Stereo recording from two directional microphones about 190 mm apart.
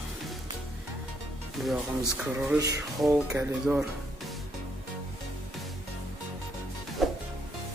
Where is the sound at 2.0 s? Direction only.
15° right (ahead or behind).